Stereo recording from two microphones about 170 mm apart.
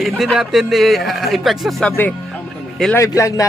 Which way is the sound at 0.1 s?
Centre (ahead or behind).